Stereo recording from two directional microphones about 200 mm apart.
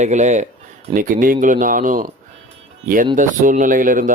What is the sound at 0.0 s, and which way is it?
Speech, 35° right (ahead or behind).